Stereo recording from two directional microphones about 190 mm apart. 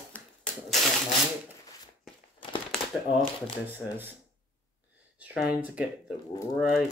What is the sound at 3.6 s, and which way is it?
Speech, 10° right (ahead or behind).